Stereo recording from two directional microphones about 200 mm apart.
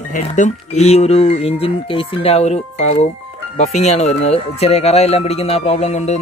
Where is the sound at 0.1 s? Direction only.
35° left (ahead or behind).